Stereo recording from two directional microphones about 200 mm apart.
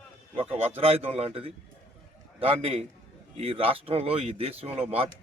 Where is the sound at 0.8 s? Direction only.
30° right (ahead or behind).